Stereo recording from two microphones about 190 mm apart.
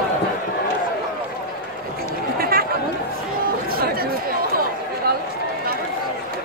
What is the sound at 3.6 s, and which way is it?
Chatter, 50° right (ahead or behind).